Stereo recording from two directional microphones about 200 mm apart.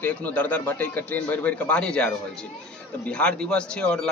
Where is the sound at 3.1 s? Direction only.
5° left (ahead or behind).